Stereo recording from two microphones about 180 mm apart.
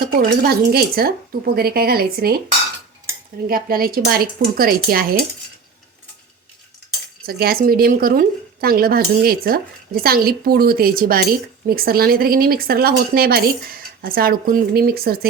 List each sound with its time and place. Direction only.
0.0 s speech: 55° right (ahead or behind)
3.5 s speech: 55° right (ahead or behind)
7.3 s speech: 55° right (ahead or behind)